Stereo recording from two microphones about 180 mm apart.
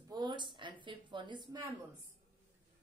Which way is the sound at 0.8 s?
25° right (ahead or behind).